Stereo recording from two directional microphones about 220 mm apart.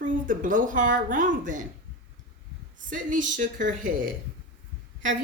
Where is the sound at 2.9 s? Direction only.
35° right (ahead or behind).